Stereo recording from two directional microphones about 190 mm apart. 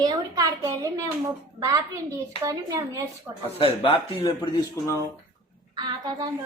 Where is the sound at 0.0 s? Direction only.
20° right (ahead or behind).